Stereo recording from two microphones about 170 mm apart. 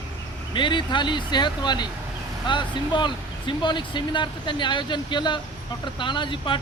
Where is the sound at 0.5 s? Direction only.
30° left (ahead or behind).